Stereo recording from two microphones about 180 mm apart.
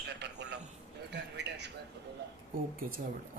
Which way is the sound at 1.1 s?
70° right (ahead or behind).